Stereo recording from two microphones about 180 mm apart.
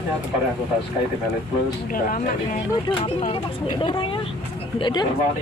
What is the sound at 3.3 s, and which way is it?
Speech, 25° left (ahead or behind).